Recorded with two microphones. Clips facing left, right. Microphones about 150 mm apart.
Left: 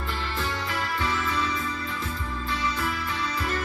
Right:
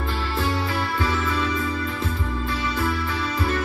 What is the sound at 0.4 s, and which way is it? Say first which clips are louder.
Music: right 7 dB; 30° right (ahead or behind).